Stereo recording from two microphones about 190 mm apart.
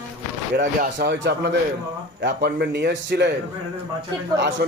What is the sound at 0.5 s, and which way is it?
Speech, 50° right (ahead or behind).